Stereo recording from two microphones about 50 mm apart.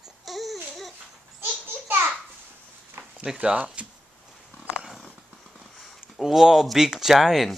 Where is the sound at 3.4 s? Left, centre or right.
Right.